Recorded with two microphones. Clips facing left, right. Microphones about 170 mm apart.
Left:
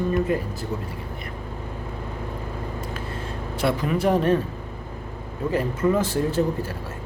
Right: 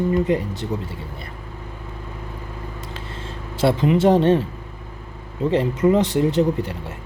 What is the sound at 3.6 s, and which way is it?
Speech, 25° right (ahead or behind).